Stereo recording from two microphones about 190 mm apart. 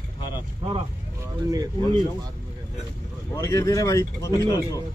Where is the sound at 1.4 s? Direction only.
20° right (ahead or behind).